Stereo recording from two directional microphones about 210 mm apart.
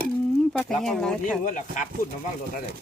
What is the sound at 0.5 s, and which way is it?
Speech, 5° left (ahead or behind).